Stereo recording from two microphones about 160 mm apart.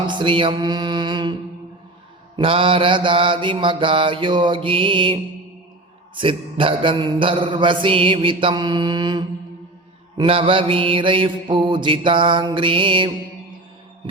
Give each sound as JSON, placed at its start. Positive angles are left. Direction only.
{"t": 0.1, "sound": "mantra", "side_deg": -30}